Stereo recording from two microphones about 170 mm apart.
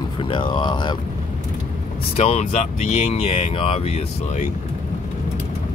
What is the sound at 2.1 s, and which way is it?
Speech, 35° left (ahead or behind).